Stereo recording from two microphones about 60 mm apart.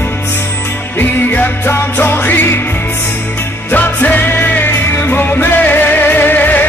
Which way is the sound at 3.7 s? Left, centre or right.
Left.